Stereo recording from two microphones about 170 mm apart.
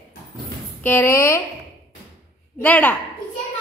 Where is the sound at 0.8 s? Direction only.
15° left (ahead or behind).